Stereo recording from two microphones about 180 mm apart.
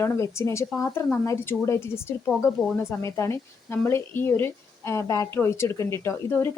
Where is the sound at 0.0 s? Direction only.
15° left (ahead or behind).